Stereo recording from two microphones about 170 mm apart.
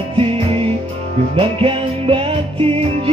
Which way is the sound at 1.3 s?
35° right (ahead or behind).